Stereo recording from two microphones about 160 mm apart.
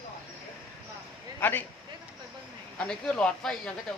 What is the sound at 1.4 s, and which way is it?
Speech, 10° left (ahead or behind).